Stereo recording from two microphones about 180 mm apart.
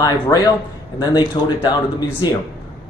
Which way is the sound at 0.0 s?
20° left (ahead or behind).